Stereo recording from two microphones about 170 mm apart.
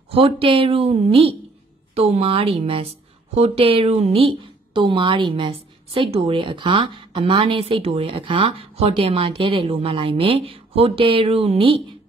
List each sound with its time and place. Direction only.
0.1 s a woman's voice: 35° right (ahead or behind)